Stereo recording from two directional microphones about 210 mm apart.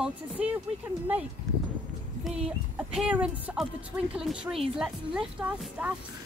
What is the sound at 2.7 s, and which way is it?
A woman's voice, 5° right (ahead or behind).